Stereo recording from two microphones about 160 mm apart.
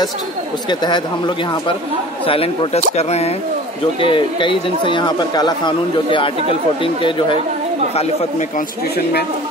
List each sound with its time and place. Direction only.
0.7 s speech: 30° left (ahead or behind)
7.9 s speech: 45° left (ahead or behind)